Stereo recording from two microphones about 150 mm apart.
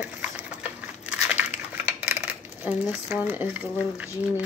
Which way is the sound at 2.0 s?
10° right (ahead or behind).